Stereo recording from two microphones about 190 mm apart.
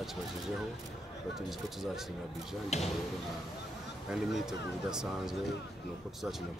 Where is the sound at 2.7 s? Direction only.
35° left (ahead or behind).